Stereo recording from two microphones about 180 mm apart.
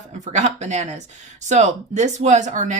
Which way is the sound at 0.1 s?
40° right (ahead or behind).